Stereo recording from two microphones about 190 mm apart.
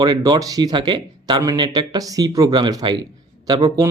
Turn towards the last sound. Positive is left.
turn(degrees=-20)  # may be behind; listen again after turning